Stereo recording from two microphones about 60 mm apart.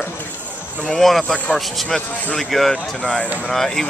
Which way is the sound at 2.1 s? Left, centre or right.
Left.